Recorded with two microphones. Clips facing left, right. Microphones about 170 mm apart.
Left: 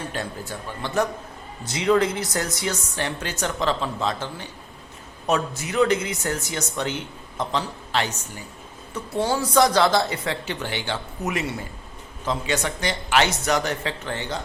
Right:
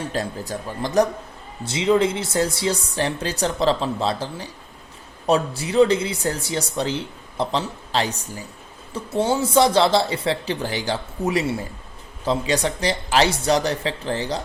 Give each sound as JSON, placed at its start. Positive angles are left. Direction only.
{"t": 0.1, "sound": "speech", "side_deg": -35}
{"t": 1.6, "sound": "speech", "side_deg": -25}
{"t": 9.2, "sound": "speech", "side_deg": -25}